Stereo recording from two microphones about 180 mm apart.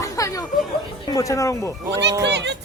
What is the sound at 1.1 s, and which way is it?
Speech, 20° left (ahead or behind).